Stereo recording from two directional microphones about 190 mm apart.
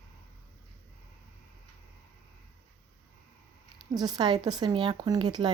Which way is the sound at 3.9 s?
20° right (ahead or behind).